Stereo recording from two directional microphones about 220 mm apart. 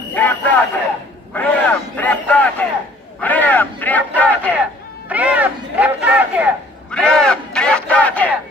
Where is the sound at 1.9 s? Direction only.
5° left (ahead or behind).